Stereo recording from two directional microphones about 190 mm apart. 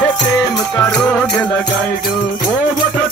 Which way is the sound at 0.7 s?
10° left (ahead or behind).